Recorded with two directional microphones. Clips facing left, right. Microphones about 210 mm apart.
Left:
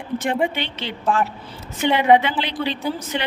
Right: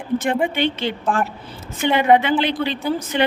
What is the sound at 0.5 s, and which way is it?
A man's voice, 50° right (ahead or behind).